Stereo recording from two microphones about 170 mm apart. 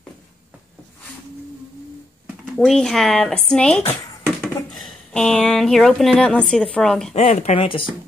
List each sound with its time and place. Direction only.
2.4 s speech: centre (ahead or behind)
7.2 s speech: 40° left (ahead or behind)